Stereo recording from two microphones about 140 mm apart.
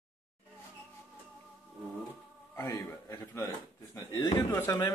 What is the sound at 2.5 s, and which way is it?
Speech, 20° left (ahead or behind).